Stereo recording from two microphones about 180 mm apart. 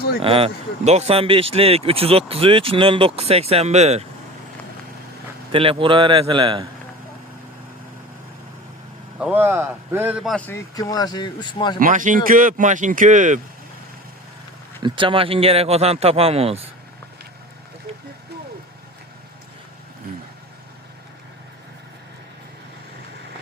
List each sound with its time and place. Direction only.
0.2 s speech: 30° right (ahead or behind)
5.5 s a man's voice: 30° right (ahead or behind)
9.1 s a man's voice: 10° right (ahead or behind)
10.3 s speech: 10° left (ahead or behind)
10.8 s speech: 20° left (ahead or behind)
11.8 s speech: 45° right (ahead or behind)
14.8 s speech: 25° right (ahead or behind)